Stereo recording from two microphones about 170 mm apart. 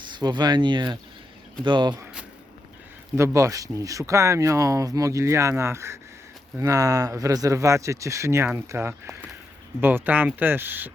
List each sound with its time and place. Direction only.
0.0 s speech: 25° right (ahead or behind)
3.2 s speech: 15° right (ahead or behind)